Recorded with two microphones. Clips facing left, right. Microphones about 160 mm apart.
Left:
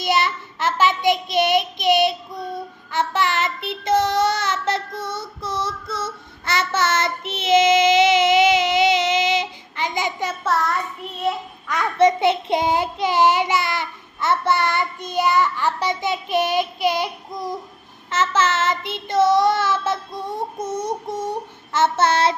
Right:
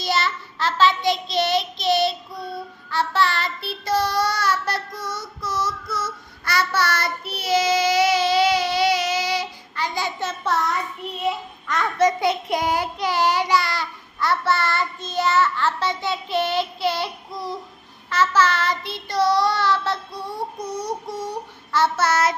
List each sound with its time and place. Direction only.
0.0 s child singing: 20° left (ahead or behind)
10.4 s a sound: centre (ahead or behind)
11.9 s child singing: 25° left (ahead or behind)